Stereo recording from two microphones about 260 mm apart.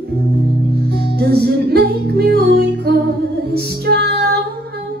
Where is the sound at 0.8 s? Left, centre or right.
Right.